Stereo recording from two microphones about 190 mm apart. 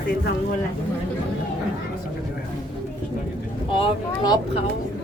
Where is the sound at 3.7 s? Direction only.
25° left (ahead or behind).